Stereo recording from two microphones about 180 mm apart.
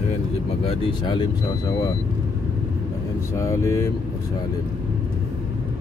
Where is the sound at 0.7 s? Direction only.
25° left (ahead or behind).